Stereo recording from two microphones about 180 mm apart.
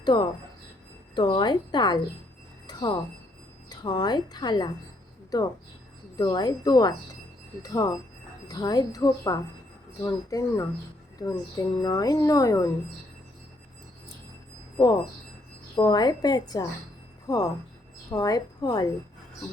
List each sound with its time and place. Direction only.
0.0 s a woman's voice: 25° left (ahead or behind)
2.6 s a sound: 25° left (ahead or behind)
3.7 s a woman's voice: 25° left (ahead or behind)
6.1 s a woman's voice: 20° left (ahead or behind)
15.7 s a woman's voice: 25° left (ahead or behind)